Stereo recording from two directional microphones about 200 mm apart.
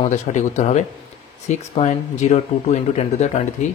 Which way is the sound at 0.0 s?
35° left (ahead or behind).